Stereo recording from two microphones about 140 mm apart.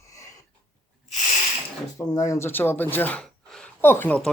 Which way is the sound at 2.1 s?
20° left (ahead or behind).